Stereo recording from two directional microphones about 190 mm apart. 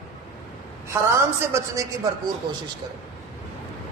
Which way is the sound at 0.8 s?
15° right (ahead or behind).